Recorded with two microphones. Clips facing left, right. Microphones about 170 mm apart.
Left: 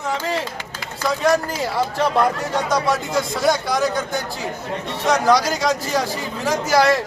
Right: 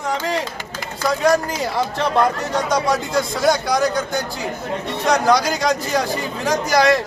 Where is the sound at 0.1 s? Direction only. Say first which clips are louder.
Right 1 dB; 5° left (ahead or behind).